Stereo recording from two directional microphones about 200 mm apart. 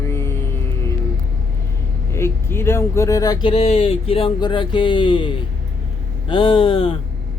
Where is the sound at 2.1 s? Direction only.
10° left (ahead or behind).